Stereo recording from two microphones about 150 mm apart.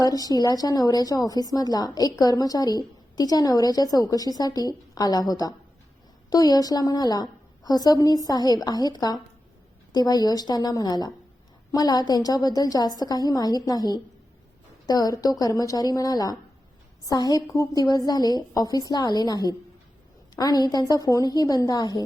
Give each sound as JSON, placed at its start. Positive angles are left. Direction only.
{"t": 0.0, "sound": "a woman's voice", "side_deg": 25}